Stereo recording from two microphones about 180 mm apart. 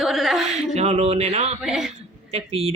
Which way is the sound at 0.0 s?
Centre (ahead or behind).